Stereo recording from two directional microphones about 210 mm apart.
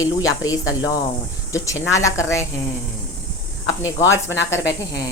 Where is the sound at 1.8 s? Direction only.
15° left (ahead or behind).